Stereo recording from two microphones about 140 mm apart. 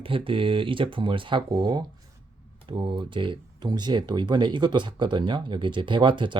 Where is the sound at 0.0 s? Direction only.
40° right (ahead or behind).